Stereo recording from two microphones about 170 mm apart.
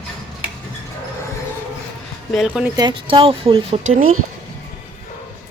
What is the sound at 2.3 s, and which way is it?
Speech, 5° right (ahead or behind).